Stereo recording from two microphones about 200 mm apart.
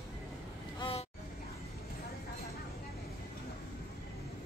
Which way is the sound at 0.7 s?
25° left (ahead or behind).